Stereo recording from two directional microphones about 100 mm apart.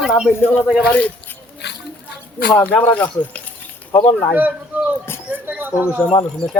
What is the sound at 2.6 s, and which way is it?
Speech, 15° left (ahead or behind).